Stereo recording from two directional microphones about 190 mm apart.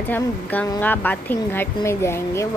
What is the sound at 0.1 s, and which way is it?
A woman's voice, 10° left (ahead or behind).